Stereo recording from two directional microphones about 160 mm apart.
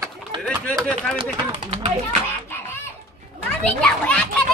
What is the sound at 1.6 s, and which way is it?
Speech, 40° right (ahead or behind).